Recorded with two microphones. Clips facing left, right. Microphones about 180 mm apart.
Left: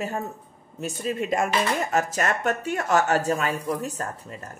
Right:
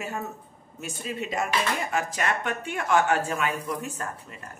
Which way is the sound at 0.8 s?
50° left (ahead or behind).